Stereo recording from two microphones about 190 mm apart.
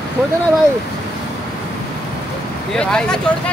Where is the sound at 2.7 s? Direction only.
5° left (ahead or behind).